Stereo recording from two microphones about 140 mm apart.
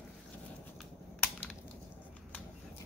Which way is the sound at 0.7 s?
5° left (ahead or behind).